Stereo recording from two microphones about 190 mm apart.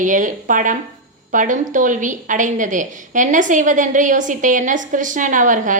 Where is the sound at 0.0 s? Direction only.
45° right (ahead or behind).